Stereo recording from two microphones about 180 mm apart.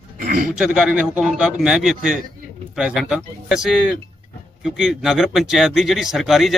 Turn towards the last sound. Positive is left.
turn(degrees=0)  # may be behind; listen again after turning